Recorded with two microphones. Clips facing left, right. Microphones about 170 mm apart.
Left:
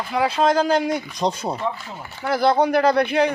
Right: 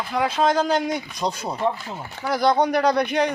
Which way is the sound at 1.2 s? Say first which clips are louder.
Left 4 dB; 25° left (ahead or behind).